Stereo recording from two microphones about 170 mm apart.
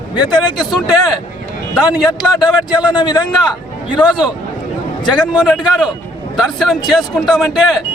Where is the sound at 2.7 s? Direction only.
25° left (ahead or behind).